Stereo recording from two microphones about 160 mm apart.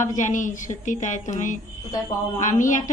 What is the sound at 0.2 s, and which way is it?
A woman's voice, 50° left (ahead or behind).